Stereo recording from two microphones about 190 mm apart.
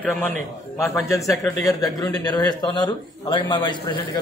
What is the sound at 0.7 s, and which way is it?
A man's voice, 15° left (ahead or behind).